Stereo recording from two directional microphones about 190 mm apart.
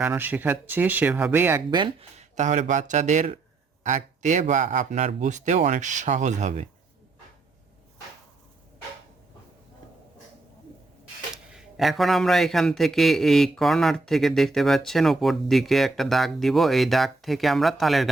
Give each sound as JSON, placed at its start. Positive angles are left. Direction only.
{"t": 0.0, "sound": "speech", "side_deg": -10}
{"t": 1.7, "sound": "speech", "side_deg": -30}
{"t": 11.5, "sound": "a man's voice", "side_deg": 0}